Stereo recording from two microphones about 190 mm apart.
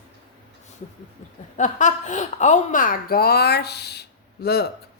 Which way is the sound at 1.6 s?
40° left (ahead or behind).